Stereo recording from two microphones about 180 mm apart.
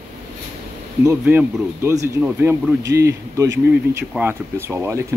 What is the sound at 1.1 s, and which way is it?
Speech, 10° right (ahead or behind).